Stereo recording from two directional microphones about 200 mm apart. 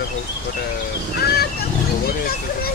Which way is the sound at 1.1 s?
50° left (ahead or behind).